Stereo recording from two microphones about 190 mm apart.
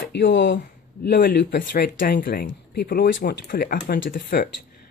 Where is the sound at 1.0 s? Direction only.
55° left (ahead or behind).